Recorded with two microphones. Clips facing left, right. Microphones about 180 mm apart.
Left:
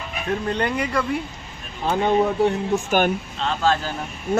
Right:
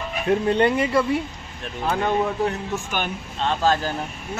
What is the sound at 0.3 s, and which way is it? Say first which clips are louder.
Speech: right 5 dB; 25° right (ahead or behind).